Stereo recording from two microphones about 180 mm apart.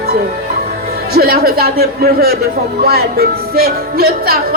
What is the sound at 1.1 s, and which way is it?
Speech, 55° right (ahead or behind).